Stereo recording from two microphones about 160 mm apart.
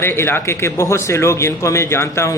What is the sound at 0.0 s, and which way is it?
A man's voice, 15° left (ahead or behind).